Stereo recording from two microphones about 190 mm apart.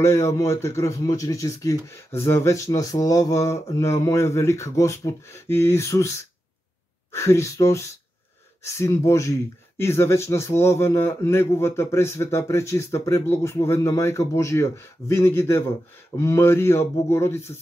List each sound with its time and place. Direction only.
0.0 s speech: 15° left (ahead or behind)